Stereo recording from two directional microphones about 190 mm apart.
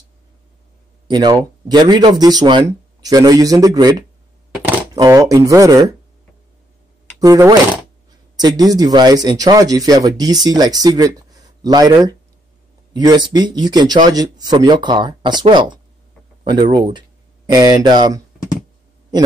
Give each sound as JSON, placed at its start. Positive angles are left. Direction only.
{"t": 1.0, "sound": "speech", "side_deg": -20}
{"t": 7.2, "sound": "speech", "side_deg": -20}